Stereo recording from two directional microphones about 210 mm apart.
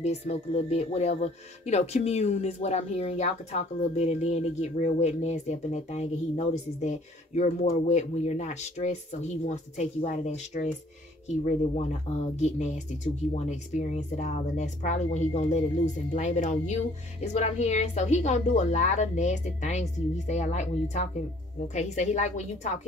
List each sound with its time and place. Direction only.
0.0 s speech: 30° left (ahead or behind)